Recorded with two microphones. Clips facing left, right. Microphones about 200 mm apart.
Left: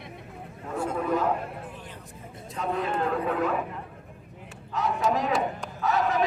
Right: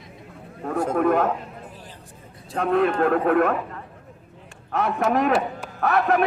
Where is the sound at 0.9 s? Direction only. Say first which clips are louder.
Right 7 dB; 65° right (ahead or behind).